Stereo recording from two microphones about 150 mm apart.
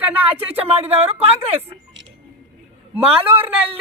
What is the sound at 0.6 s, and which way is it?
Speech, 40° right (ahead or behind).